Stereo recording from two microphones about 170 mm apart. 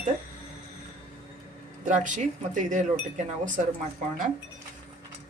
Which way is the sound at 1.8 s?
50° right (ahead or behind).